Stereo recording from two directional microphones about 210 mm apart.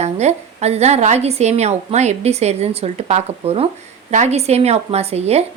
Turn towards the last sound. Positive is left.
turn(degrees=-30)  # may be behind; listen again after turning